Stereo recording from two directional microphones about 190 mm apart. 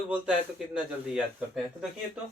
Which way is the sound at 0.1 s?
5° right (ahead or behind).